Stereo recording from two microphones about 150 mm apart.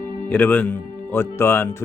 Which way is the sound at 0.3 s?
10° left (ahead or behind).